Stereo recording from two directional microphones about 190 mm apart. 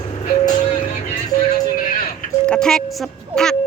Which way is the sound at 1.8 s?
45° left (ahead or behind).